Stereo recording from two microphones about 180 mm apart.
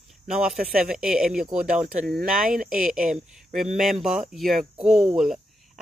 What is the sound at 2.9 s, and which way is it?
Speech, 50° right (ahead or behind).